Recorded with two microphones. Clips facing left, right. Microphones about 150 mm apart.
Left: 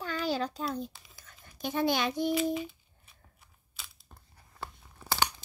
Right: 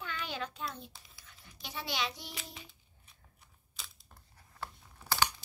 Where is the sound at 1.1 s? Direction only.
45° left (ahead or behind).